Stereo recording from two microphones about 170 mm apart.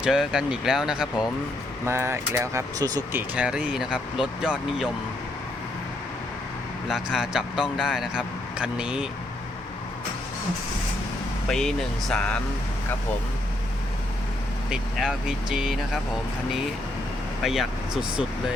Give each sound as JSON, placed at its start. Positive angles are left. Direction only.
{"t": 0.0, "sound": "speech", "side_deg": -5}
{"t": 1.9, "sound": "speech", "side_deg": -15}
{"t": 3.2, "sound": "speech", "side_deg": -5}
{"t": 6.8, "sound": "speech", "side_deg": 0}
{"t": 11.4, "sound": "speech", "side_deg": 5}
{"t": 14.7, "sound": "speech", "side_deg": -5}
{"t": 17.4, "sound": "speech", "side_deg": 0}